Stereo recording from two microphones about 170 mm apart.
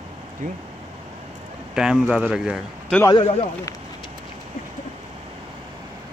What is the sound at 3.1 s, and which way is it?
Speech, 30° left (ahead or behind).